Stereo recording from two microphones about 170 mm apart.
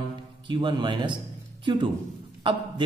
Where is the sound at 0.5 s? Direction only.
30° right (ahead or behind).